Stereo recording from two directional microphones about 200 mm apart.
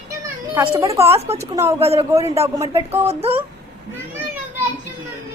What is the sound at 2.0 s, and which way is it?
A woman's voice, 15° right (ahead or behind).